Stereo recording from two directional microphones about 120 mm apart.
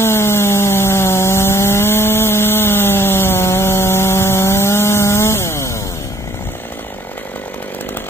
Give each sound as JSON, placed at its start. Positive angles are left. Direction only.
{"t": 0.0, "sound": "chainsaw", "side_deg": 20}